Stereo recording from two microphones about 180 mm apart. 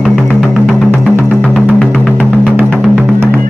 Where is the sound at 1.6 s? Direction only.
Centre (ahead or behind).